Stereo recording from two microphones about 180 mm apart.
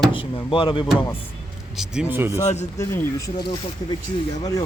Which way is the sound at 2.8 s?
20° left (ahead or behind).